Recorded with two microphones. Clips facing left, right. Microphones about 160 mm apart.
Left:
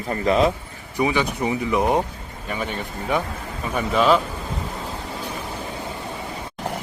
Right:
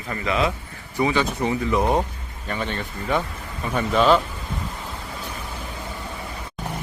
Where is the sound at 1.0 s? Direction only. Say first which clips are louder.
Even; 15° left (ahead or behind).